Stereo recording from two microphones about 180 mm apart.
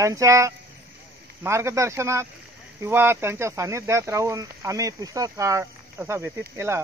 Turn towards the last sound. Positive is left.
turn(degrees=-15)  # may be behind; listen again after turning